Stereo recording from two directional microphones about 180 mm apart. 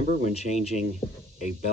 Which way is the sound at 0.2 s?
35° left (ahead or behind).